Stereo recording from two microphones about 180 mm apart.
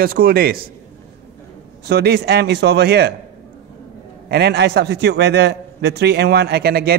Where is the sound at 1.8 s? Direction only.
65° right (ahead or behind).